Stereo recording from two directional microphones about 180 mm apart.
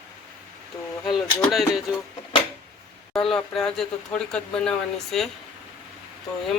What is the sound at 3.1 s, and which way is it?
Speech, centre (ahead or behind).